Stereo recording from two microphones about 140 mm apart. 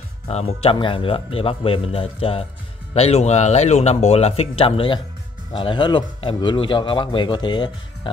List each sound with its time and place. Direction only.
0.3 s a man's voice: 50° left (ahead or behind)